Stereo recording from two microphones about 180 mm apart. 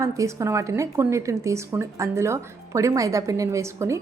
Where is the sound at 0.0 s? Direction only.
15° right (ahead or behind).